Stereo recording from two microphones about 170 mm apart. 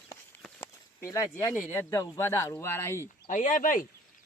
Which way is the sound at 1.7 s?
15° left (ahead or behind).